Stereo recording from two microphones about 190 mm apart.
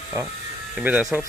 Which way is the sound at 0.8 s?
5° right (ahead or behind).